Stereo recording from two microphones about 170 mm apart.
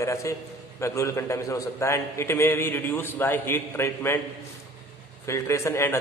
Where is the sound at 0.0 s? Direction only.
15° left (ahead or behind).